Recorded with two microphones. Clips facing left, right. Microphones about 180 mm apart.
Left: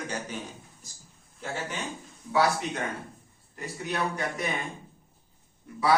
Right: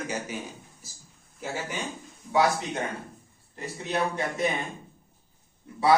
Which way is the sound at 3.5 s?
25° right (ahead or behind).